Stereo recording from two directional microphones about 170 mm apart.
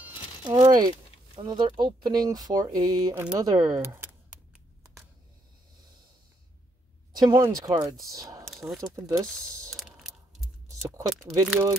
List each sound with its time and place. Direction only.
0.5 s speech: 25° right (ahead or behind)
7.1 s speech: 25° right (ahead or behind)
8.5 s a sound: centre (ahead or behind)
8.8 s speech: 20° right (ahead or behind)
9.7 s a sound: centre (ahead or behind)
10.8 s speech: 20° right (ahead or behind)